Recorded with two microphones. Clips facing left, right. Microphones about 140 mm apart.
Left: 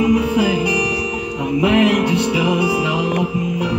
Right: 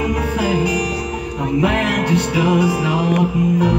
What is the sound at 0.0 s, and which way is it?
Music, 50° right (ahead or behind).